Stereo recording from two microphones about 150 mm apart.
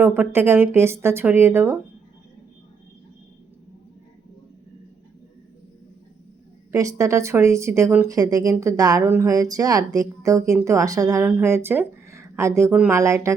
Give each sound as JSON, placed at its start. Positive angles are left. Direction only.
{"t": 0.0, "sound": "speech", "side_deg": -15}
{"t": 6.7, "sound": "speech", "side_deg": -20}